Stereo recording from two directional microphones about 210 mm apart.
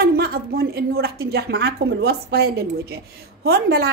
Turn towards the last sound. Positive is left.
turn(degrees=-50)  # may be behind; listen again after turning